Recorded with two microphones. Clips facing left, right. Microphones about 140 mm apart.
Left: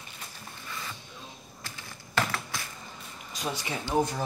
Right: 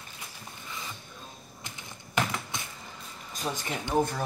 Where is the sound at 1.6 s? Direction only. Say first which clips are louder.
Even; 20° right (ahead or behind).